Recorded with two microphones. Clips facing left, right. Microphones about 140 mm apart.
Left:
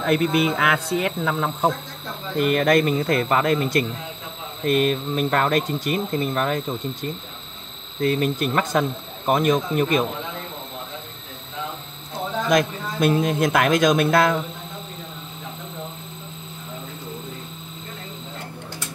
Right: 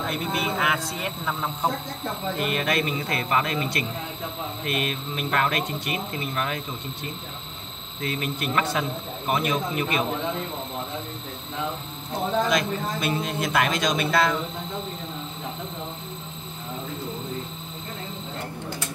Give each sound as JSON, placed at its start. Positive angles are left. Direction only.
{"t": 0.0, "sound": "speech", "side_deg": 65}
{"t": 2.3, "sound": "a man's voice", "side_deg": 50}
{"t": 8.0, "sound": "a man's voice", "side_deg": 45}
{"t": 12.4, "sound": "a man's voice", "side_deg": 50}